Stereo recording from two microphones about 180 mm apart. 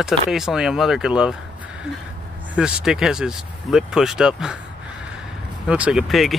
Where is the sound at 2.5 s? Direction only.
5° right (ahead or behind).